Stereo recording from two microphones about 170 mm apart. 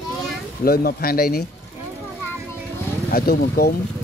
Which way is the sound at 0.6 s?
60° left (ahead or behind).